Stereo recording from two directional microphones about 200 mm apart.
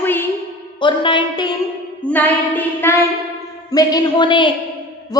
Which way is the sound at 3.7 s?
20° left (ahead or behind).